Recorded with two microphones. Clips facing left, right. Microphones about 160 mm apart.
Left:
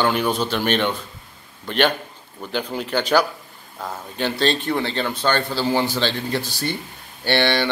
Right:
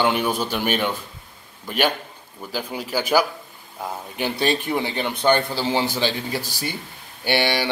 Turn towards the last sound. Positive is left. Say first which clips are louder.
# left 2 dB
turn(degrees=-10)  # may be behind; listen again after turning